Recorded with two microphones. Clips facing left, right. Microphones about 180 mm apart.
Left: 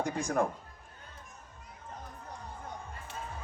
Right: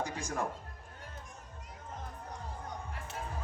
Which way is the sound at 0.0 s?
55° left (ahead or behind).